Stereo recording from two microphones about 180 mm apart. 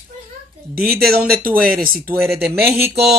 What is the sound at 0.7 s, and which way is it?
Speech, 55° right (ahead or behind).